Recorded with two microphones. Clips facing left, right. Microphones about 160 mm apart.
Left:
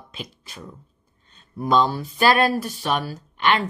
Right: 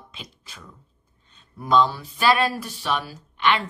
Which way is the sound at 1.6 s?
45° left (ahead or behind).